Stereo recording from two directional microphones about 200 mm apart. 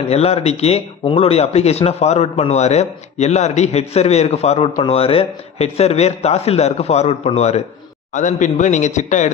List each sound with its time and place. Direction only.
0.1 s speech: 30° left (ahead or behind)